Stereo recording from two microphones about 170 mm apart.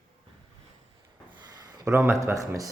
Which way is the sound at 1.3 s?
25° right (ahead or behind).